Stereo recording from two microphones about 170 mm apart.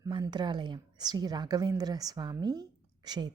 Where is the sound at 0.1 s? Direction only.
25° right (ahead or behind).